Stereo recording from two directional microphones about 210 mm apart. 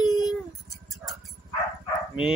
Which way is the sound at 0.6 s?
Centre (ahead or behind).